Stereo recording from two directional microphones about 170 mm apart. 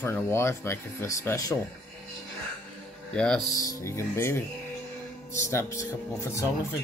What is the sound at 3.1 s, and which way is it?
Speech, 5° left (ahead or behind).